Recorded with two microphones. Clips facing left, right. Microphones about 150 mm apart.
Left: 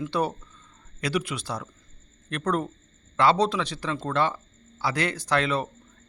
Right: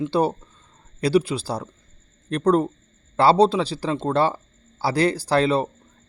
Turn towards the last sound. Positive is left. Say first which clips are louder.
# right 6 dB
turn(degrees=-30)  # may be behind; listen again after turning